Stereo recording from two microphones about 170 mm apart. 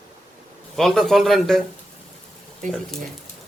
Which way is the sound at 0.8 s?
Centre (ahead or behind).